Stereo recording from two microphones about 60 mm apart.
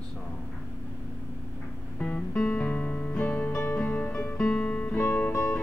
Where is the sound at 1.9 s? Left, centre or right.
Centre.